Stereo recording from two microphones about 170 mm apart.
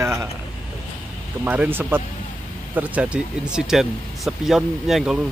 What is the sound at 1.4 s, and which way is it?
Speech, 10° right (ahead or behind).